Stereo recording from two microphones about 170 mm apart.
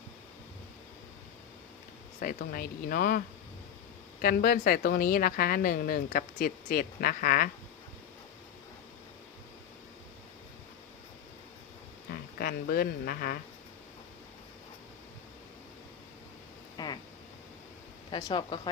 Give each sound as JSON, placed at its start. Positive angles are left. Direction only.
{"t": 2.2, "sound": "speech", "side_deg": 55}
{"t": 12.4, "sound": "speech", "side_deg": 60}
{"t": 16.7, "sound": "a sound", "side_deg": 25}
{"t": 18.1, "sound": "speech", "side_deg": 25}